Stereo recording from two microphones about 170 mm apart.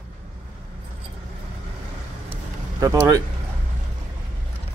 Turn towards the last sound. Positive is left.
turn(degrees=-20)  # may be behind; listen again after turning